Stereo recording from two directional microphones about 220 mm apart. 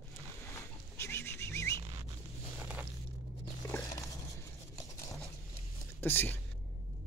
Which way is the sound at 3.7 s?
15° left (ahead or behind).